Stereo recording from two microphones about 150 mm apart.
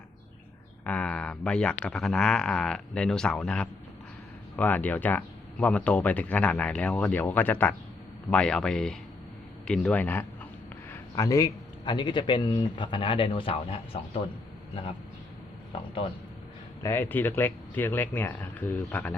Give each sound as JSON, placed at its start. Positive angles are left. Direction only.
{"t": 0.9, "sound": "a man's voice", "side_deg": 10}
{"t": 16.8, "sound": "speech", "side_deg": 15}